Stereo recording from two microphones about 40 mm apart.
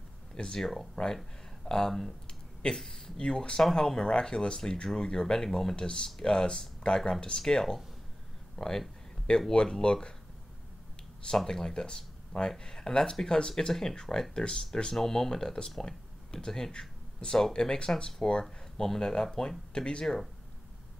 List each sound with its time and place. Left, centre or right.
0.3 s speech: centre
1.7 s speech: centre
2.2 s a sound: centre
3.2 s speech: centre
5.8 s speech: centre
11.3 s speech: centre